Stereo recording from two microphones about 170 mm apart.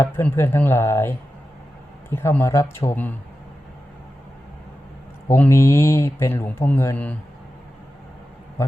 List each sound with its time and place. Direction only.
0.0 s speech: 10° left (ahead or behind)
5.3 s speech: 15° left (ahead or behind)